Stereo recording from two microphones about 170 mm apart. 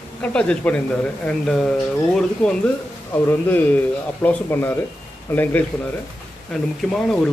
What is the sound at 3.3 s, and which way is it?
Speech, 15° left (ahead or behind).